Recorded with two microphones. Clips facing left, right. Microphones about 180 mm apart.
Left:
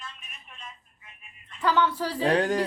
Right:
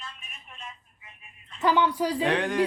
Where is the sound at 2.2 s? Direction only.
35° left (ahead or behind).